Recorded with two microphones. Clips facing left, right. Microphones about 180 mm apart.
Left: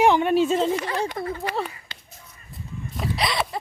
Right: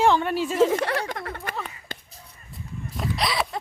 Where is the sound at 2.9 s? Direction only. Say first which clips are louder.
Left 1 dB; centre (ahead or behind).